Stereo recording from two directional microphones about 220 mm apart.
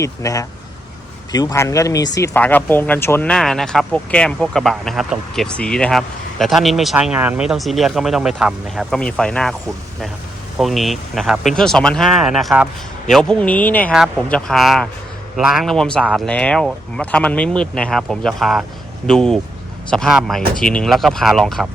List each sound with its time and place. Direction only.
0.0 s speech: 15° left (ahead or behind)
10.6 s speech: centre (ahead or behind)